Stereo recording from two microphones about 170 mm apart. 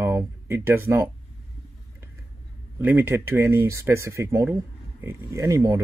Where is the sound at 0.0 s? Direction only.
15° right (ahead or behind).